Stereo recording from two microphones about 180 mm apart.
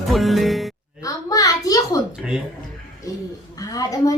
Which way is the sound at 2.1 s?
5° right (ahead or behind).